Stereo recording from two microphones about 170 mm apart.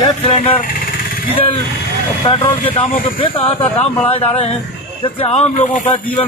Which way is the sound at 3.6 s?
10° left (ahead or behind).